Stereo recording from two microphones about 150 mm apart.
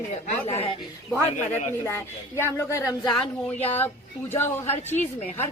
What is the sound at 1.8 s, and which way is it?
A man's voice, 15° left (ahead or behind).